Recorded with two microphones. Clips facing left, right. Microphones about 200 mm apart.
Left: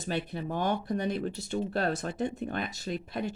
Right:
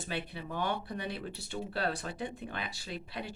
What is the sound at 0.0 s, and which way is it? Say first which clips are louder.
Speech: left 6 dB; 45° left (ahead or behind).